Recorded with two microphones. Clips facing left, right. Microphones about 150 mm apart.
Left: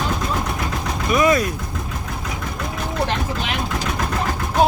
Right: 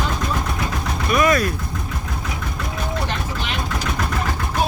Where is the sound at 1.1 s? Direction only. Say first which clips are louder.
Left 1 dB; 20° left (ahead or behind).